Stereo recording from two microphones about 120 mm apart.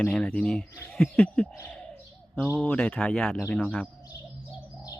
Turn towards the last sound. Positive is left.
turn(degrees=10)  # may be behind; listen again after turning